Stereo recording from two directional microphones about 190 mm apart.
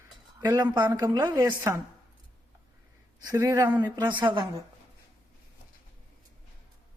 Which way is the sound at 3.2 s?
20° right (ahead or behind).